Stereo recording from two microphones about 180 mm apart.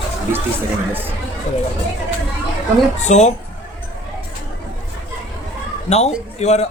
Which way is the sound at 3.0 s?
40° left (ahead or behind).